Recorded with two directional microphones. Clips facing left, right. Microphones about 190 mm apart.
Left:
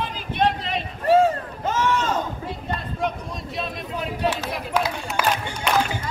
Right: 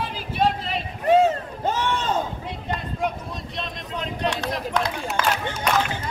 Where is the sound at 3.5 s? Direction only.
5° left (ahead or behind).